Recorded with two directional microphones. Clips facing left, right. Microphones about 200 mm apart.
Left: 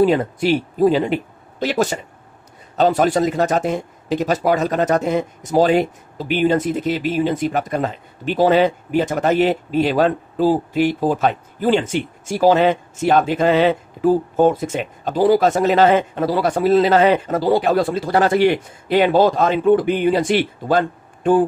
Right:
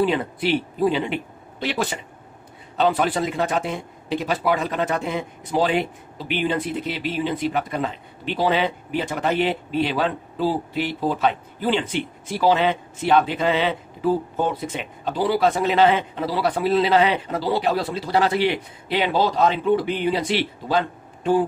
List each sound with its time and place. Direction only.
0.0 s speech: 45° left (ahead or behind)